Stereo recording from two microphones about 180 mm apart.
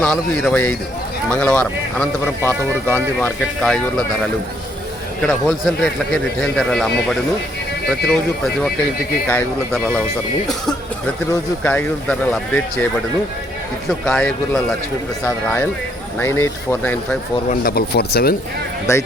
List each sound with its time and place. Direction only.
0.0 s speech: 5° left (ahead or behind)
5.2 s speech: 5° left (ahead or behind)
9.3 s speech: 10° left (ahead or behind)
11.6 s speech: 5° left (ahead or behind)
14.0 s speech: 5° left (ahead or behind)
17.5 s speech: 55° left (ahead or behind)
18.9 s speech: 15° left (ahead or behind)